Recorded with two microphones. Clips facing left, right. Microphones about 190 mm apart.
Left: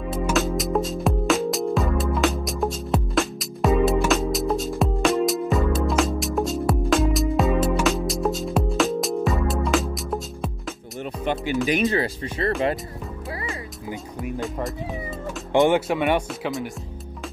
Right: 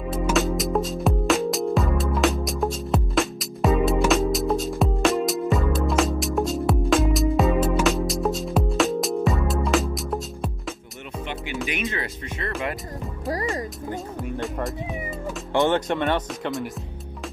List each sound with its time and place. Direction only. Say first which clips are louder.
0.1 s music: even; centre (ahead or behind)
11.6 s speech: left 7 dB; 35° left (ahead or behind)
13.3 s music: right 7 dB; 40° right (ahead or behind)
13.8 s speech: right 1 dB; 10° left (ahead or behind)
15.5 s speech: left 3 dB; 20° left (ahead or behind)
15.9 s speech: left 2 dB; 5° left (ahead or behind)